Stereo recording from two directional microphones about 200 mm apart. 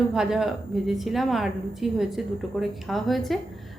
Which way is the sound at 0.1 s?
5° right (ahead or behind).